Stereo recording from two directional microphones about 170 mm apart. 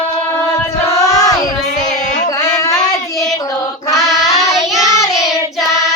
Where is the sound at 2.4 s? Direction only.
20° left (ahead or behind).